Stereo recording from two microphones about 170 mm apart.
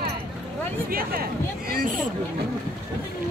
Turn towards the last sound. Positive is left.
turn(degrees=-60)  # may be behind; listen again after turning